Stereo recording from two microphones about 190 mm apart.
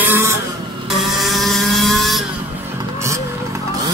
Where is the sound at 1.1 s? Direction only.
Centre (ahead or behind).